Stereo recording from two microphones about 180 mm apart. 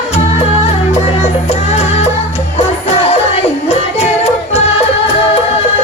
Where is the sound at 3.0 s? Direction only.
35° left (ahead or behind).